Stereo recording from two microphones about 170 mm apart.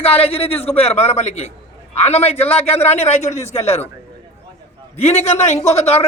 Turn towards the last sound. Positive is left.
turn(degrees=40)  # may be behind; listen again after turning